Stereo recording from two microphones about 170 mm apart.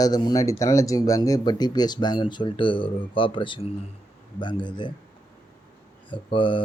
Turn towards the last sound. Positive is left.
turn(degrees=30)  # may be behind; listen again after turning